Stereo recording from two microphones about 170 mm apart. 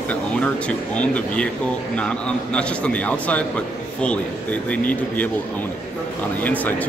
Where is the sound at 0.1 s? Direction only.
5° left (ahead or behind).